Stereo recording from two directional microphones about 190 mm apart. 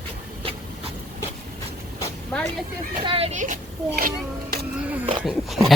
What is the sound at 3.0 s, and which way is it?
Vehicle, 25° right (ahead or behind).